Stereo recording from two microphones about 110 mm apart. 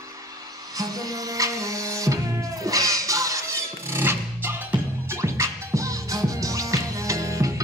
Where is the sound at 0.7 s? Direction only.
35° right (ahead or behind).